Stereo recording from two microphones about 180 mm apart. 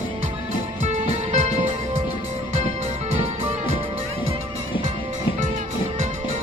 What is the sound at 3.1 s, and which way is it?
Music, 35° right (ahead or behind).